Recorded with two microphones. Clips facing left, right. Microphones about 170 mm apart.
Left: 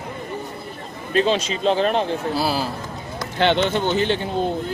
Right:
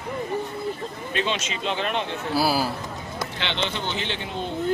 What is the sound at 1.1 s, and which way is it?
Speech, 35° left (ahead or behind).